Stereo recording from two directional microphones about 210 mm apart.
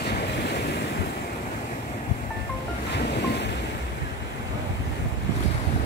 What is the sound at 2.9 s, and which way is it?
Waves, 50° left (ahead or behind).